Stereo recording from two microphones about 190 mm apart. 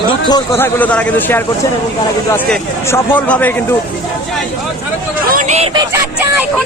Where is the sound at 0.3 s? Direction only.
15° left (ahead or behind).